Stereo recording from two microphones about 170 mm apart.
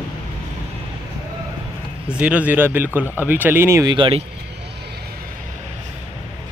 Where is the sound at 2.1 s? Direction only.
10° right (ahead or behind).